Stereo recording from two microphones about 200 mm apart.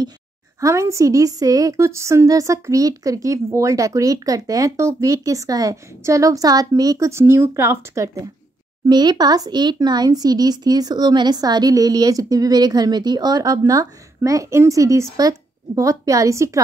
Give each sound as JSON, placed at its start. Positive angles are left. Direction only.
{"t": 0.6, "sound": "a woman's voice", "side_deg": -15}